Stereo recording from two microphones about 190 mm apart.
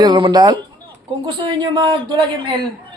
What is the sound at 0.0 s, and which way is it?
A man's voice, 25° right (ahead or behind).